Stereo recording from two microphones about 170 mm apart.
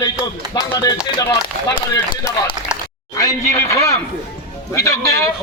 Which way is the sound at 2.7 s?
5° right (ahead or behind).